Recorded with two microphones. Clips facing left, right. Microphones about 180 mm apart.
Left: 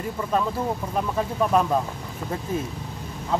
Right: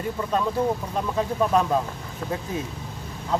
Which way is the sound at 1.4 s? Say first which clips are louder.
Left 1 dB; 5° left (ahead or behind).